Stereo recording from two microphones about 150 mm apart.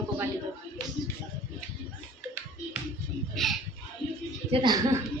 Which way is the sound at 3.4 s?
Centre (ahead or behind).